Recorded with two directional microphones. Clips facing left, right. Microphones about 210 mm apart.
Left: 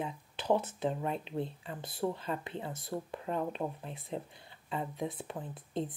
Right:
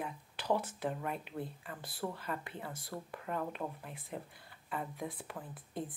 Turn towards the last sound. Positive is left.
turn(degrees=25)  # may be behind; listen again after turning